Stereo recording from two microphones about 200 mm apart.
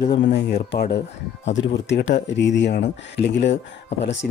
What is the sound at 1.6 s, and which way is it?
Speech, 65° left (ahead or behind).